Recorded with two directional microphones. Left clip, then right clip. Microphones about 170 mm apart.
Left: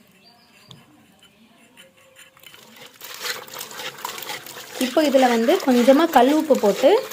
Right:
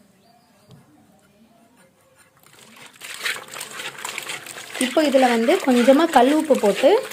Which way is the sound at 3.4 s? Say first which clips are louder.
Right 1 dB; 15° right (ahead or behind).